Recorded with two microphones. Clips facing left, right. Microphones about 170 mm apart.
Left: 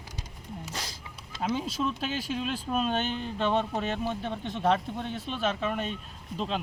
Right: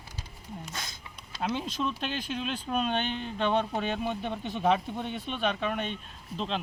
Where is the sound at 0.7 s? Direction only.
30° left (ahead or behind).